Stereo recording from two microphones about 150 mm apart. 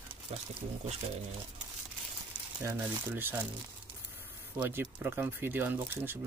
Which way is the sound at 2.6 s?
15° right (ahead or behind).